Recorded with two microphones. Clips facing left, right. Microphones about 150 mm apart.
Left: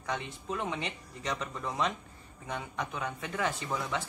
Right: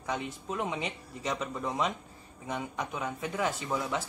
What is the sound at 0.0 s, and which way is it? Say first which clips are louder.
Speech: right 2 dB; 5° right (ahead or behind).